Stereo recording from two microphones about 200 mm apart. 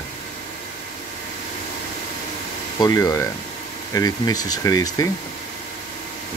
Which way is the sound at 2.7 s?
20° left (ahead or behind).